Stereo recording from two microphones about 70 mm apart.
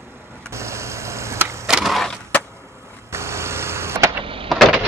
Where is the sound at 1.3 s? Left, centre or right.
Right.